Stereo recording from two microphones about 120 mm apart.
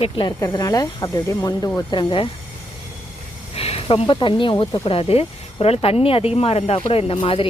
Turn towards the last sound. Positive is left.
turn(degrees=45)  # may be behind; listen again after turning